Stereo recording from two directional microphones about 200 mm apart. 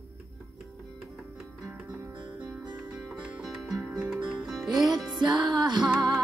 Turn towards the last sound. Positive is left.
turn(degrees=0)  # may be behind; listen again after turning